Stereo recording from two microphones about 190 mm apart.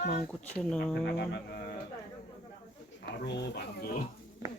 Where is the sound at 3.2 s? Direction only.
65° left (ahead or behind).